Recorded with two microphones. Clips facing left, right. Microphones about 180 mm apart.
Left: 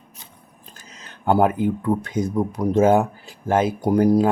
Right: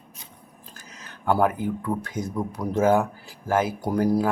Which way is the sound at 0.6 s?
20° left (ahead or behind).